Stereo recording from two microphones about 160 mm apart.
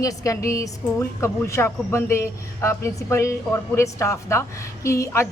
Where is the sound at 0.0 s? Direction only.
20° left (ahead or behind).